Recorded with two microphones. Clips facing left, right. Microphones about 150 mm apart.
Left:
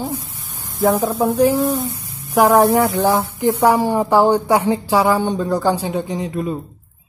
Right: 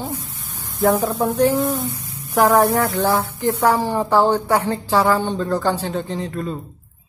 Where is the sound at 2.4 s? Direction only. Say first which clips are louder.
Left 3 dB; 10° left (ahead or behind).